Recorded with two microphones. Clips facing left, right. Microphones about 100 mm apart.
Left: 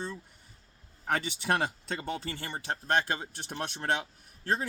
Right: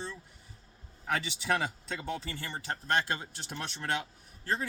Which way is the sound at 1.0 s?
45° left (ahead or behind).